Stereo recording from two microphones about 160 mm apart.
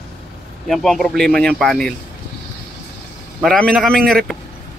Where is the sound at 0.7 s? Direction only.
Centre (ahead or behind).